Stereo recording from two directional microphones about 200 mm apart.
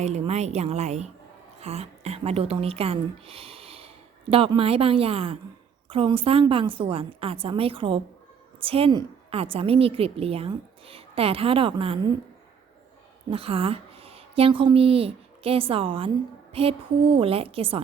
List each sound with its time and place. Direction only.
0.0 s a woman's voice: 35° right (ahead or behind)
13.3 s a woman's voice: 30° right (ahead or behind)